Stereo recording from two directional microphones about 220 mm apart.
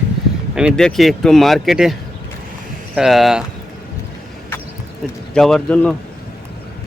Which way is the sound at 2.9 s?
Centre (ahead or behind).